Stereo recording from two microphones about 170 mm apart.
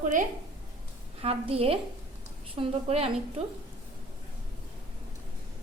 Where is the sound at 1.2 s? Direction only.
35° right (ahead or behind).